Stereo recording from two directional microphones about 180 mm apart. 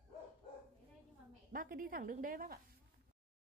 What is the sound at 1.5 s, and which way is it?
A woman's voice, 50° right (ahead or behind).